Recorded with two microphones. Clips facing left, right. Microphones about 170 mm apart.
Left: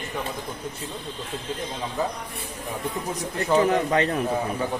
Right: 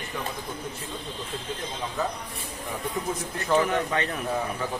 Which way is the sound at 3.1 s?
35° left (ahead or behind).